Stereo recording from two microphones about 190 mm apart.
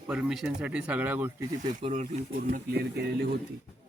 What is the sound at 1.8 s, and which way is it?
Speech, 35° right (ahead or behind).